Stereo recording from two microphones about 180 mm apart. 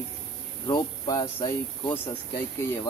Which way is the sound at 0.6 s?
20° left (ahead or behind).